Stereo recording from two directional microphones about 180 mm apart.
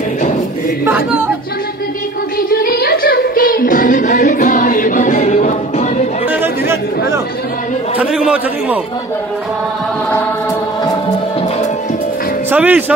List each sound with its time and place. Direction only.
2.5 s music: 55° left (ahead or behind); by 5.9 s 40° left (ahead or behind)
6.4 s chatter: 15° right (ahead or behind)
8.0 s a man's voice: 5° right (ahead or behind)
12.4 s speech: 10° right (ahead or behind)